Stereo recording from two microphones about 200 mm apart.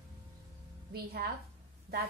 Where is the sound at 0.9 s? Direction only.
50° right (ahead or behind).